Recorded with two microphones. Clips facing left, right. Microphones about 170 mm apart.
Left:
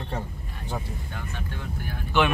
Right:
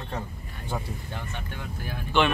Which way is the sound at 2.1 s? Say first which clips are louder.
Even; 5° left (ahead or behind).